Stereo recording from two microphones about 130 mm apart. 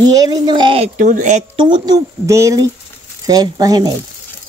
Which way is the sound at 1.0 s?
80° right.